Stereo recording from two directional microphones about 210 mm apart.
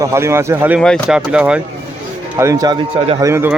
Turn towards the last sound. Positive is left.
turn(degrees=-10)  # may be behind; listen again after turning